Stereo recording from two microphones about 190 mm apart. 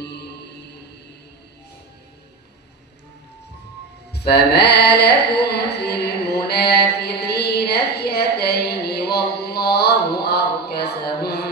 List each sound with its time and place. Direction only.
0.0 s music: 60° left (ahead or behind)
4.1 s carnatic music: 60° left (ahead or behind)